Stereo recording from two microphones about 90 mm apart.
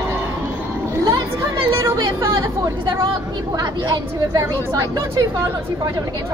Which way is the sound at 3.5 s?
45° right (ahead or behind).